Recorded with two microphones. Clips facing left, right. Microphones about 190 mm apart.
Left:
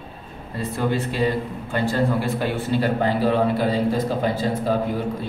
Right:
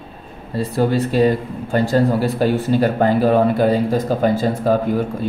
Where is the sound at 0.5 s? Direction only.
35° right (ahead or behind).